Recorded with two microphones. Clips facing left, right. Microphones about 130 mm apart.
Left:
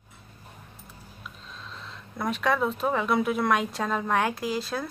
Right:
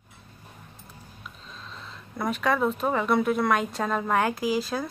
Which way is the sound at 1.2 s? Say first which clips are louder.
Left 1 dB; centre (ahead or behind).